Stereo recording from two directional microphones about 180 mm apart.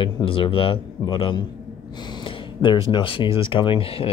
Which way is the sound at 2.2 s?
25° left (ahead or behind).